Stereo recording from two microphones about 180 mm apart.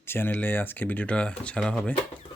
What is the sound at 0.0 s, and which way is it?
Speech, 10° left (ahead or behind).